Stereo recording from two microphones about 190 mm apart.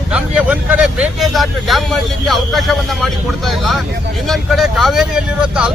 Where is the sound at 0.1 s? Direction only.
5° right (ahead or behind).